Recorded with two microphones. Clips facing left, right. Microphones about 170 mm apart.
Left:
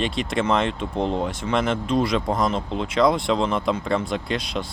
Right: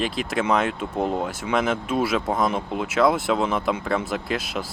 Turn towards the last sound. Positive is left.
turn(degrees=-5)  # may be behind; listen again after turning